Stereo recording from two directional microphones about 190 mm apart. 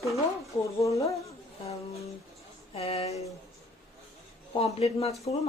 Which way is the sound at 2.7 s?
30° left (ahead or behind).